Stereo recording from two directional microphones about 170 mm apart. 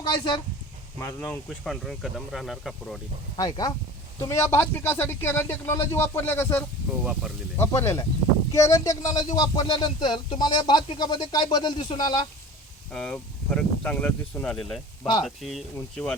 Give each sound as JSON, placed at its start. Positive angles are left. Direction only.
{"t": 0.0, "sound": "speech", "side_deg": 25}
{"t": 0.9, "sound": "speech", "side_deg": 10}
{"t": 3.3, "sound": "a man's voice", "side_deg": 25}
{"t": 7.0, "sound": "speech", "side_deg": 0}
{"t": 7.5, "sound": "a man's voice", "side_deg": 15}
{"t": 12.9, "sound": "speech", "side_deg": 5}